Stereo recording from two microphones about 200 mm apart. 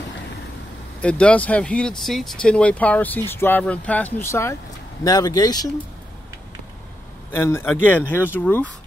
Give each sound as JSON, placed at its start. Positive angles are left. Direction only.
{"t": 1.0, "sound": "speech", "side_deg": 5}
{"t": 7.2, "sound": "speech", "side_deg": 10}